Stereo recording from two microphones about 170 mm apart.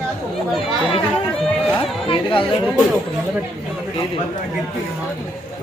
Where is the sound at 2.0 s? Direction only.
30° left (ahead or behind).